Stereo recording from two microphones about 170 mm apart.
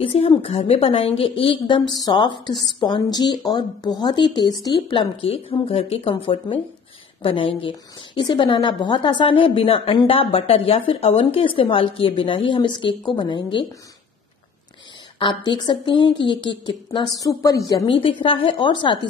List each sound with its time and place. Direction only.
0.0 s a woman's voice: 35° left (ahead or behind)
15.1 s speech: 30° left (ahead or behind)